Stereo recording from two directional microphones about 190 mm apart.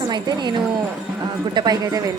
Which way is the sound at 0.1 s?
20° right (ahead or behind).